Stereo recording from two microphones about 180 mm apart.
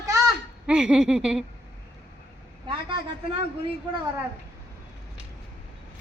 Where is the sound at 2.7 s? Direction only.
30° right (ahead or behind).